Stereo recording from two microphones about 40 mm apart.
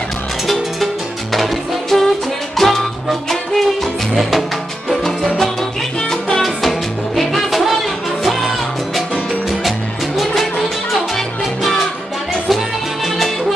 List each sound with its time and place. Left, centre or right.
1.3 s music: centre
4.8 s salsa music: centre
5.9 s salsa music: centre
6.4 s music: centre
12.4 s salsa music: centre